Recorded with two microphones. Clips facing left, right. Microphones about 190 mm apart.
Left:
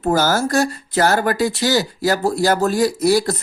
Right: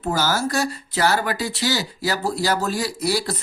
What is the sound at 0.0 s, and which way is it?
Speech, 50° left (ahead or behind).